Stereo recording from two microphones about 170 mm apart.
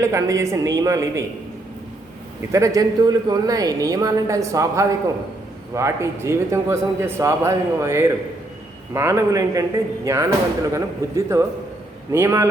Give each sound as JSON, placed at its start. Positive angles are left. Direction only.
{"t": 0.0, "sound": "a man's voice", "side_deg": -15}
{"t": 2.5, "sound": "a man's voice", "side_deg": -20}